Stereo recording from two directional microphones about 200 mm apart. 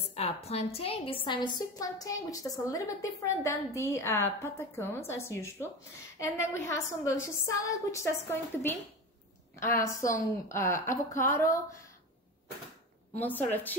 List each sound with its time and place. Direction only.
0.0 s a woman's voice: 30° left (ahead or behind); by 11.6 s 15° left (ahead or behind)